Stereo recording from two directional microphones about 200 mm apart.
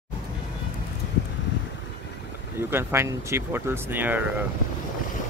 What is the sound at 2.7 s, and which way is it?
Speech, 10° right (ahead or behind).